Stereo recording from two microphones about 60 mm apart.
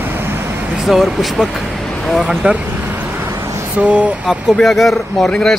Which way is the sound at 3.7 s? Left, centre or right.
Right.